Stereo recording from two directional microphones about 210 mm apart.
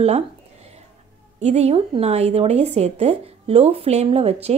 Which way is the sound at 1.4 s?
30° right (ahead or behind).